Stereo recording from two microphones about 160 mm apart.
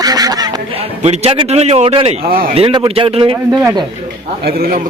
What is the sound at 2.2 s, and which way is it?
Speech, 65° right (ahead or behind).